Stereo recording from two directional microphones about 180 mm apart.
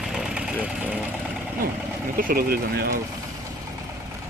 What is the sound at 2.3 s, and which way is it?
Speech, 55° right (ahead or behind).